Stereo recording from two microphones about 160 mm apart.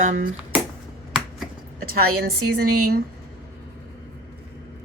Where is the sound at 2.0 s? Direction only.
80° right.